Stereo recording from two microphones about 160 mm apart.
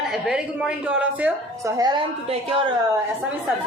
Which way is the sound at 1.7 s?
20° right (ahead or behind).